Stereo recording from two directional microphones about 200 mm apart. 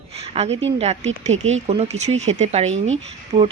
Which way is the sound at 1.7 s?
30° right (ahead or behind).